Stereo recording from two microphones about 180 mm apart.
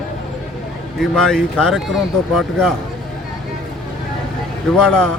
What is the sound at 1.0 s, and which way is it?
Speech, 5° left (ahead or behind).